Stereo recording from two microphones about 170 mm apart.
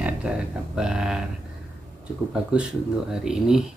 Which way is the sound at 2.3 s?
5° right (ahead or behind).